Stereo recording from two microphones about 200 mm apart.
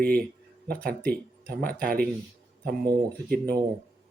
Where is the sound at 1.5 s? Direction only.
50° right (ahead or behind).